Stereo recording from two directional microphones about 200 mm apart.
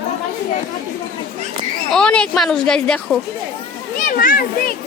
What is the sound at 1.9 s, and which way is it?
A woman's voice, 5° left (ahead or behind).